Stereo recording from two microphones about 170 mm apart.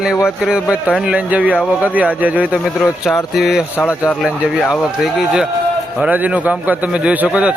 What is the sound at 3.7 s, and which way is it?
Speech, 10° left (ahead or behind).